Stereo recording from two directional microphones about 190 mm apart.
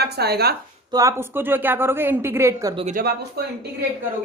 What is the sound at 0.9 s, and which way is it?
A woman's voice, 15° right (ahead or behind).